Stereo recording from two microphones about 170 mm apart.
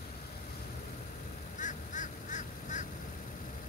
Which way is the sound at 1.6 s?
45° left (ahead or behind).